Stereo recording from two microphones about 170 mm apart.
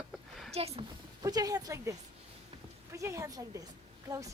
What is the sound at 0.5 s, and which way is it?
Speech, 35° right (ahead or behind).